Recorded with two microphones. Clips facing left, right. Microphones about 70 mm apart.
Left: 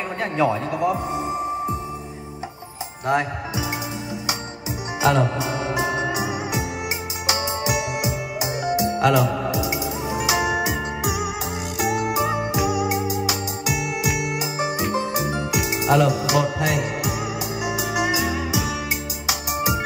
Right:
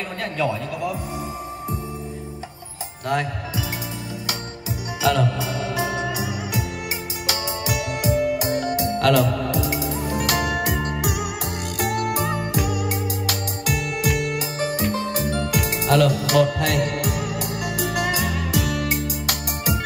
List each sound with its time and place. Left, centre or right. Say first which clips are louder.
0.2 s a man's voice: left 4 dB; left
3.1 s a man's voice: left 2 dB; centre
5.0 s music: left 1 dB; left
8.1 s music: right 6 dB; centre